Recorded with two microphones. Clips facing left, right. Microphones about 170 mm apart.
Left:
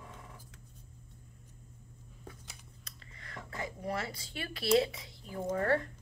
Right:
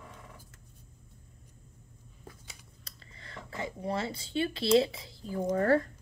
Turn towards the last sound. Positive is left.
turn(degrees=-40)  # may be behind; listen again after turning